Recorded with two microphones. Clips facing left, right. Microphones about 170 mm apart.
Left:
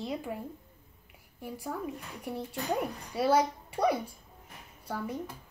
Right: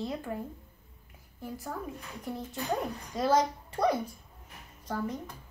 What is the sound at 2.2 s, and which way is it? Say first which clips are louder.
Child singing: left 1 dB; 10° left (ahead or behind).